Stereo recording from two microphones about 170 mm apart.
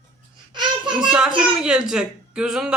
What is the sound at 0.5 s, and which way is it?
Child singing, 25° right (ahead or behind).